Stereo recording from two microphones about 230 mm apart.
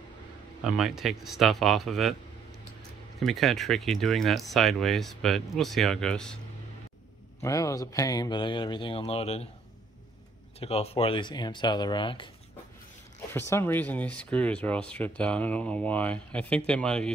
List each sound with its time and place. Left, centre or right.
0.7 s speech: centre
3.2 s speech: centre
7.4 s speech: centre
10.6 s speech: left
13.3 s speech: centre